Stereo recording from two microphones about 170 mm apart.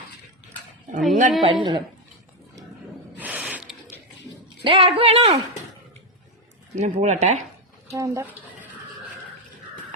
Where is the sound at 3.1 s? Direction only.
10° right (ahead or behind).